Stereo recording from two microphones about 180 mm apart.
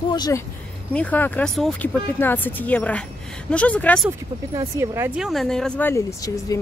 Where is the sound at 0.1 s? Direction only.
20° left (ahead or behind).